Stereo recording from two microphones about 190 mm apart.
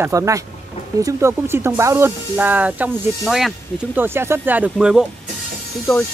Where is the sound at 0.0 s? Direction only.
15° right (ahead or behind).